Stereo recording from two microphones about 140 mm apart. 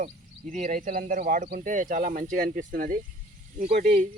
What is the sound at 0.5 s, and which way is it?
Speech, 65° right (ahead or behind).